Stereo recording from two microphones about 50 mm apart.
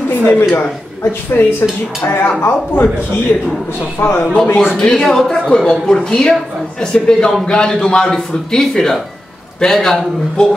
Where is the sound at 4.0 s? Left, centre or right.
Left.